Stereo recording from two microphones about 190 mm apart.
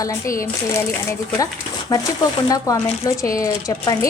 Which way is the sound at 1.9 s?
20° left (ahead or behind).